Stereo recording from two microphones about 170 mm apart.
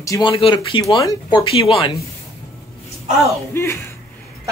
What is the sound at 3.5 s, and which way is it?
Speech, 15° left (ahead or behind).